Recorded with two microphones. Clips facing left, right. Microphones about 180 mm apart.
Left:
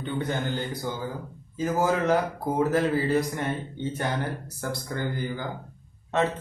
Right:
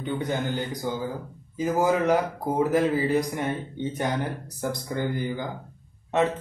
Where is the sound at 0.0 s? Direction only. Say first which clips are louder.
Right 1 dB; 15° right (ahead or behind).